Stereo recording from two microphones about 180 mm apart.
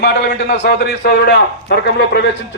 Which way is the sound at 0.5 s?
65° left (ahead or behind).